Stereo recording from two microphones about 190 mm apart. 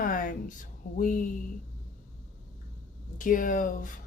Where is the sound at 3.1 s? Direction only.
45° left (ahead or behind).